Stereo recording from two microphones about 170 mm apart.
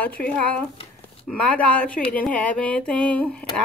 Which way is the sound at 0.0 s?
10° left (ahead or behind).